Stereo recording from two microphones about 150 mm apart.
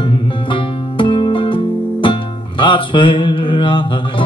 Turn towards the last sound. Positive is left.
turn(degrees=35)  # may be behind; listen again after turning